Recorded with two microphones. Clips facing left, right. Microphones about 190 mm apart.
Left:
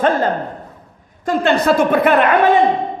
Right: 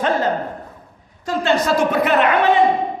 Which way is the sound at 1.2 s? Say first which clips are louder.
Left 3 dB; 55° left (ahead or behind).